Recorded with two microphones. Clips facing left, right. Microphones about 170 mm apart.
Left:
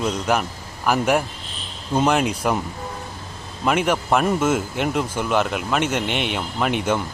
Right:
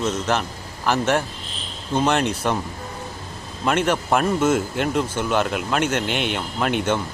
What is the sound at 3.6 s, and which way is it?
Speech, 5° left (ahead or behind).